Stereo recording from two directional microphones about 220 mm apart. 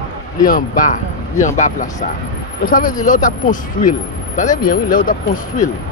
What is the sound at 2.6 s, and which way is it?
Speech, 40° left (ahead or behind).